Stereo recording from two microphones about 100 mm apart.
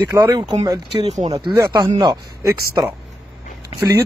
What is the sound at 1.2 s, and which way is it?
Speech, 90° right.